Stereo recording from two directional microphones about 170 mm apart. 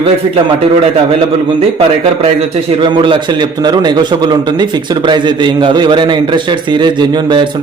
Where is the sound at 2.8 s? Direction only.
30° right (ahead or behind).